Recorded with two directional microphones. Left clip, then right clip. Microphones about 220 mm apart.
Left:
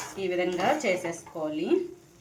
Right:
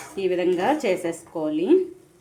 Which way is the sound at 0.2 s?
40° right (ahead or behind).